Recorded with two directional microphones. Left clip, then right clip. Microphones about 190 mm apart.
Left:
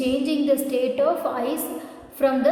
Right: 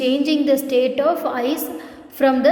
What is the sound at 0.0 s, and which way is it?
A woman's voice, 35° right (ahead or behind).